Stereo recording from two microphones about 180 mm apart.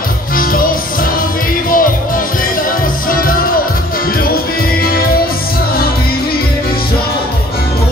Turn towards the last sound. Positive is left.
turn(degrees=55)  # may be behind; listen again after turning